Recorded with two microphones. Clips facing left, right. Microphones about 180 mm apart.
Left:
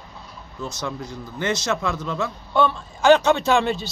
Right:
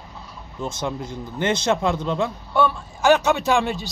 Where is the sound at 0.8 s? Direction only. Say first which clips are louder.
Right 2 dB; 25° right (ahead or behind).